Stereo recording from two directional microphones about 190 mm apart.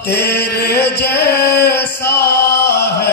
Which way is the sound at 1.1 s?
60° left (ahead or behind).